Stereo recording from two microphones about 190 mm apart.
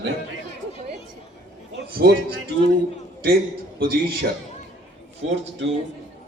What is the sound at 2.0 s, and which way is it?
Speech, 60° right (ahead or behind).